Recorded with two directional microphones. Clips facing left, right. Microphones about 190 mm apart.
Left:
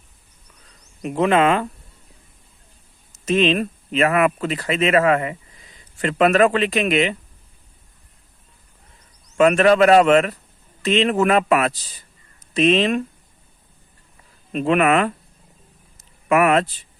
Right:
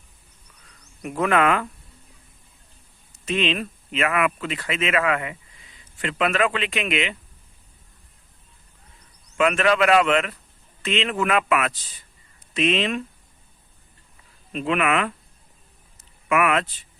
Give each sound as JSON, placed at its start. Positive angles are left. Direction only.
{"t": 1.0, "sound": "speech", "side_deg": 25}
{"t": 3.2, "sound": "speech", "side_deg": 40}
{"t": 9.4, "sound": "speech", "side_deg": 40}
{"t": 14.5, "sound": "speech", "side_deg": 40}
{"t": 16.3, "sound": "speech", "side_deg": 35}